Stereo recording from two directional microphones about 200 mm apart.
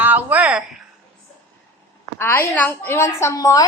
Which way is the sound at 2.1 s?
10° left (ahead or behind).